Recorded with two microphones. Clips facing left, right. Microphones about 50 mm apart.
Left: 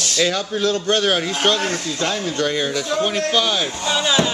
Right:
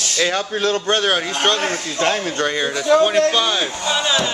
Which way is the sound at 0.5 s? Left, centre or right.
Right.